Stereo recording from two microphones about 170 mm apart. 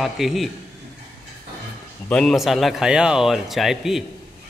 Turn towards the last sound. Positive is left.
turn(degrees=0)  # may be behind; listen again after turning